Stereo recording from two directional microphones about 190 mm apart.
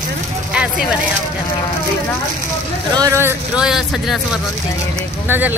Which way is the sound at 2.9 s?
15° right (ahead or behind).